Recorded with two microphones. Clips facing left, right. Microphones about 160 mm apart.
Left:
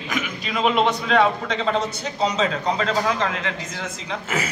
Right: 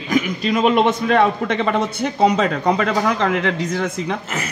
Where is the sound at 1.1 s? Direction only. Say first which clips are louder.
Right 3 dB; 55° right (ahead or behind).